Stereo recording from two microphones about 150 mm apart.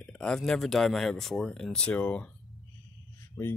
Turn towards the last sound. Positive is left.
turn(degrees=15)  # may be behind; listen again after turning